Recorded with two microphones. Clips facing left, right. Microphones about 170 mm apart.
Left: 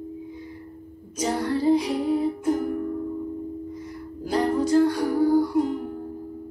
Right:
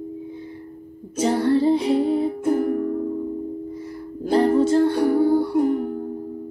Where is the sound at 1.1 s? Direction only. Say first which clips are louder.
Right 6 dB; 30° right (ahead or behind).